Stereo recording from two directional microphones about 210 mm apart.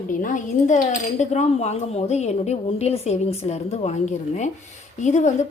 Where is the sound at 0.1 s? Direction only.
40° left (ahead or behind).